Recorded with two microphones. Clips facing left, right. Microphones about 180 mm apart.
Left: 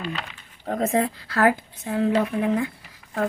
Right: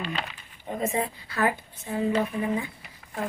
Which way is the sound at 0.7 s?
90° left.